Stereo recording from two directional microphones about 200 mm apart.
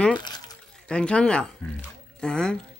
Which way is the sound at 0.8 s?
5° left (ahead or behind).